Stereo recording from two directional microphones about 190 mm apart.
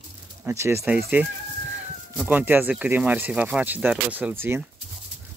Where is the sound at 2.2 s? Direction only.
10° right (ahead or behind).